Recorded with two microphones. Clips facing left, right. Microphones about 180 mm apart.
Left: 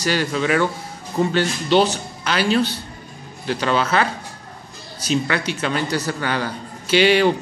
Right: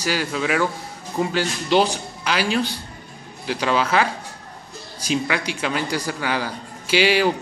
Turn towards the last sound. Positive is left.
turn(degrees=-5)  # may be behind; listen again after turning